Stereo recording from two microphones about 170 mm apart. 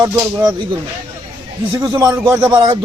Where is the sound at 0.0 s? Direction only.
15° right (ahead or behind).